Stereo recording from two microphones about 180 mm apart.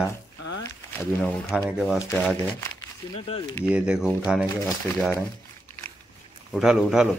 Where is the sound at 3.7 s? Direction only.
5° right (ahead or behind).